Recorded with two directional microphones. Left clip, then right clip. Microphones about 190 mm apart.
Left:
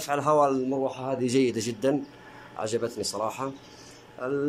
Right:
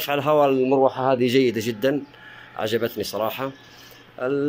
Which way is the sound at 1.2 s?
5° left (ahead or behind).